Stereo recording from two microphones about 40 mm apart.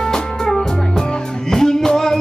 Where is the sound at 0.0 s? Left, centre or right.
Centre.